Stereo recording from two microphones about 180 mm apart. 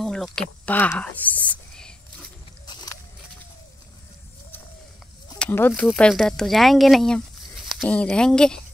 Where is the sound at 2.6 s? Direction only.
25° left (ahead or behind).